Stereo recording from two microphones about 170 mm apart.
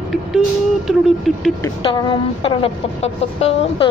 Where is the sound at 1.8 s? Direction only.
30° left (ahead or behind).